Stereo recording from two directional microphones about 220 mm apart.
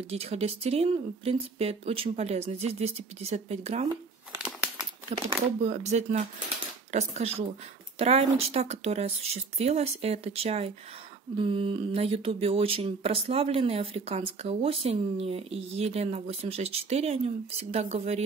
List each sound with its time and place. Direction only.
0.1 s speech: 30° right (ahead or behind)
4.3 s crumpling: 5° right (ahead or behind)
5.6 s speech: 30° right (ahead or behind)